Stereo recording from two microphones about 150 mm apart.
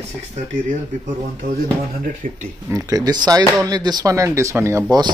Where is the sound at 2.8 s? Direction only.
25° right (ahead or behind).